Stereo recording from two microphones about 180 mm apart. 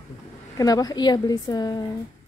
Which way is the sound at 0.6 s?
20° left (ahead or behind).